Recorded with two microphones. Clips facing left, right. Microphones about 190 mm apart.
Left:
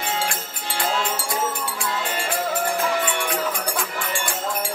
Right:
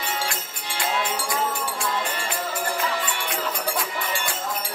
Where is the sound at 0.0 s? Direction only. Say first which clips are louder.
Left 3 dB; 50° left (ahead or behind).